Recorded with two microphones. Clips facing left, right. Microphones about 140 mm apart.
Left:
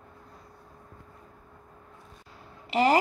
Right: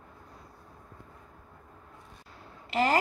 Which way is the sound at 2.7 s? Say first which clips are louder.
Left 4 dB; 15° left (ahead or behind).